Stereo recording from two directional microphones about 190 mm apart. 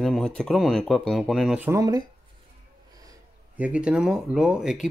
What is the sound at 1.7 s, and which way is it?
Speech, 15° right (ahead or behind).